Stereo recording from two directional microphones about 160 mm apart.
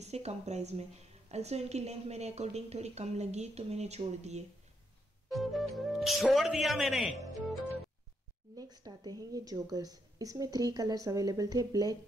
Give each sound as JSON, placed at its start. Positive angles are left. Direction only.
{"t": 0.0, "sound": "a woman's voice", "side_deg": -40}
{"t": 5.3, "sound": "speech", "side_deg": 0}
{"t": 8.5, "sound": "a woman's voice", "side_deg": -25}